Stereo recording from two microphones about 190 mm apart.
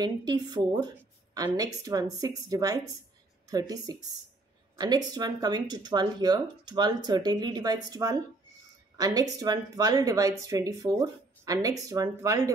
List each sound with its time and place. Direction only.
0.0 s speech: 20° right (ahead or behind)